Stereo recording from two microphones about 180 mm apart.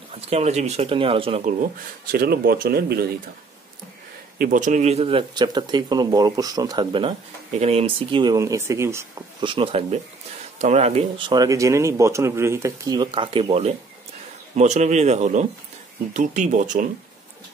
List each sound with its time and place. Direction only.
0.1 s speech: 35° right (ahead or behind)
2.0 s speech: 60° right (ahead or behind)
4.4 s speech: 45° right (ahead or behind); by 9.0 s 15° right (ahead or behind)
9.4 s speech: 30° right (ahead or behind); by 16.8 s 45° right (ahead or behind)